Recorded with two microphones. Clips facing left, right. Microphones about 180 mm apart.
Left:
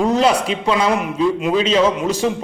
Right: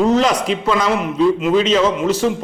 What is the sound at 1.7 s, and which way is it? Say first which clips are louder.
Speech: even; 15° left (ahead or behind).